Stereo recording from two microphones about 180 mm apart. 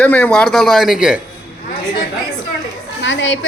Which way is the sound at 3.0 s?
90° left.